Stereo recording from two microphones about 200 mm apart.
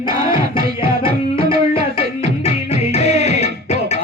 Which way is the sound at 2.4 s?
30° left (ahead or behind).